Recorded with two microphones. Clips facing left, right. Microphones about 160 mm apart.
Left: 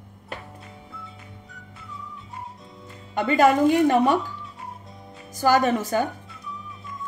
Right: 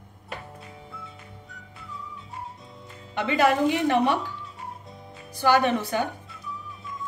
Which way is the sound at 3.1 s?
45° left (ahead or behind).